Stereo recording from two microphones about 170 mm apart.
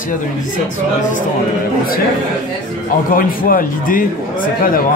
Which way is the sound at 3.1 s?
55° left (ahead or behind).